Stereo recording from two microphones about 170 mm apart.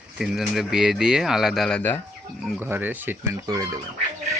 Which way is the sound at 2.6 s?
10° right (ahead or behind).